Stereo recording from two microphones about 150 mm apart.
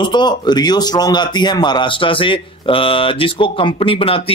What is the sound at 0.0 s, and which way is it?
A man's voice, 30° left (ahead or behind).